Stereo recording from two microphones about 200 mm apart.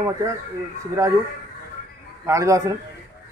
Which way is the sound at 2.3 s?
15° right (ahead or behind).